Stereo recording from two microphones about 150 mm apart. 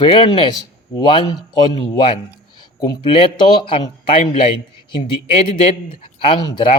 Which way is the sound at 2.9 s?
35° left (ahead or behind).